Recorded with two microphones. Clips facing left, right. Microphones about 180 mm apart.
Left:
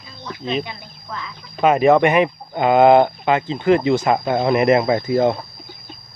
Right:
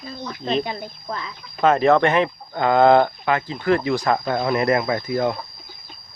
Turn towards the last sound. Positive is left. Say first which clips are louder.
# left 5 dB
turn(degrees=25)  # may be behind; listen again after turning